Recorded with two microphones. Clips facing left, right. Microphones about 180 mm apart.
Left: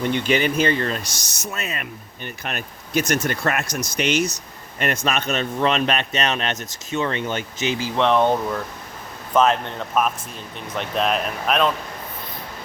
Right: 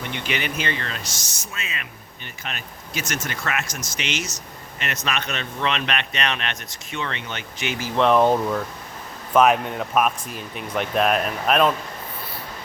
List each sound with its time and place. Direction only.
0.1 s speech: 40° left (ahead or behind)
1.1 s speech: 65° left (ahead or behind)
1.6 s speech: 50° left (ahead or behind)
4.8 s speech: 45° left (ahead or behind)
7.9 s speech: 5° right (ahead or behind)